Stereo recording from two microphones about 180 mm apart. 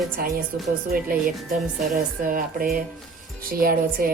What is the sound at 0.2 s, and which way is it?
A woman's voice, 55° right (ahead or behind).